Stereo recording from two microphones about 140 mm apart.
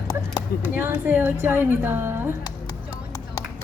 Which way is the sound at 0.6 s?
10° right (ahead or behind).